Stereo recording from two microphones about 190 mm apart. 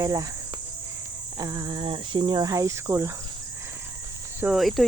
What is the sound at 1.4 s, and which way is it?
Speech, 20° right (ahead or behind).